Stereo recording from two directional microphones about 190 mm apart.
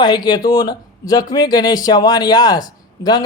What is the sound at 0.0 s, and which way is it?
A man's voice, 20° left (ahead or behind).